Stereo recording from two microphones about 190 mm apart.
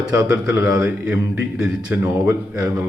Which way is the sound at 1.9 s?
15° right (ahead or behind).